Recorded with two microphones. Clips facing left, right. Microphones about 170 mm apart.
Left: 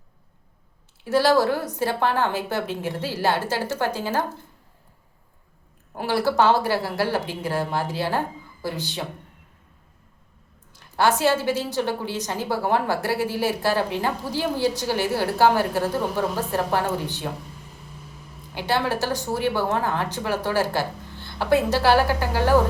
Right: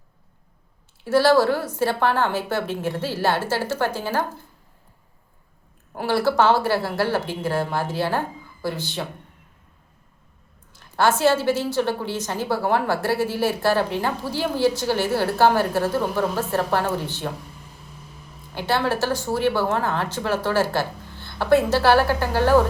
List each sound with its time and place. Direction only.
1.0 s a woman's voice: 15° left (ahead or behind)
6.0 s a woman's voice: 15° left (ahead or behind)
10.7 s a woman's voice: 15° left (ahead or behind)
18.5 s a woman's voice: 15° left (ahead or behind)